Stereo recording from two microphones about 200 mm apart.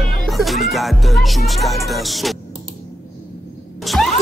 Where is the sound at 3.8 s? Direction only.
Centre (ahead or behind).